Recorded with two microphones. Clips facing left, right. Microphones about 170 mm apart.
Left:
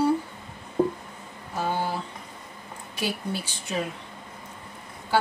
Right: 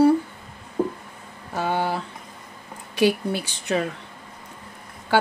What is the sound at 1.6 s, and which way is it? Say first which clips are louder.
Speech: right 3 dB; 70° right (ahead or behind).